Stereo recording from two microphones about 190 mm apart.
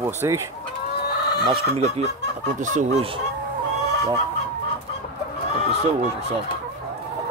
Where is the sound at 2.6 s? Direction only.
40° right (ahead or behind).